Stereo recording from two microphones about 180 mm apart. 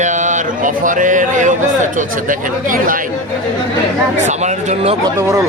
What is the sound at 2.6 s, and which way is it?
Speech, 50° right (ahead or behind).